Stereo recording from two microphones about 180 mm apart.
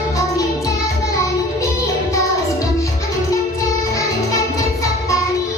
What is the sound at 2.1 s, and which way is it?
Music, 20° left (ahead or behind).